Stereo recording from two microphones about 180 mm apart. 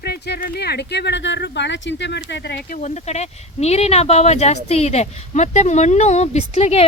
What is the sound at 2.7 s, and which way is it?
Speech, 40° left (ahead or behind).